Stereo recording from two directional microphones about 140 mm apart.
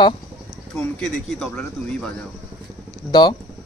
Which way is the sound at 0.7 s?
5° left (ahead or behind).